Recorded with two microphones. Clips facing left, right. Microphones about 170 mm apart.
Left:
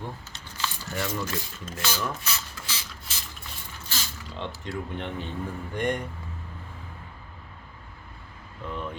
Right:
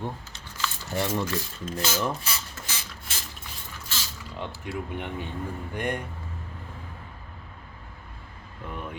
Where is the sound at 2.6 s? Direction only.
50° right (ahead or behind).